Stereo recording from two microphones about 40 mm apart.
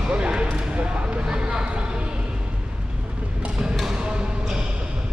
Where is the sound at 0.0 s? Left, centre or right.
Right.